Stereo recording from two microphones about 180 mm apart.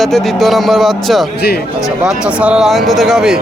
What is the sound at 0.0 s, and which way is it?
Speech, centre (ahead or behind).